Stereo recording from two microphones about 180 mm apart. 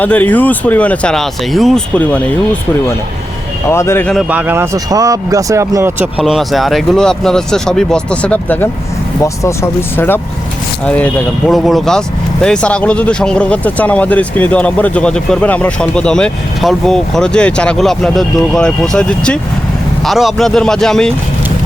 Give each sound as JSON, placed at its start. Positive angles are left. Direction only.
{"t": 0.0, "sound": "speech", "side_deg": 10}
{"t": 4.1, "sound": "speech", "side_deg": -5}
{"t": 6.2, "sound": "speech", "side_deg": 0}